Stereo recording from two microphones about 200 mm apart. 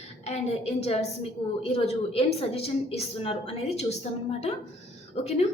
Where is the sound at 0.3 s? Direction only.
30° left (ahead or behind).